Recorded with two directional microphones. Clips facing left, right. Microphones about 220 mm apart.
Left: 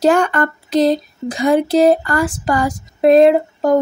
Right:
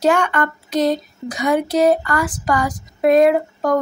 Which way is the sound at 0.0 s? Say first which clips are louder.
Left 3 dB; 35° left (ahead or behind).